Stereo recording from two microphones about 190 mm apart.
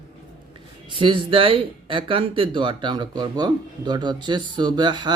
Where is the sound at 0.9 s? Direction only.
25° right (ahead or behind).